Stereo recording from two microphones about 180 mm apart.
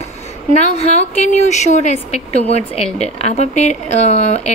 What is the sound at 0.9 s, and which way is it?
A woman's voice, 40° left (ahead or behind).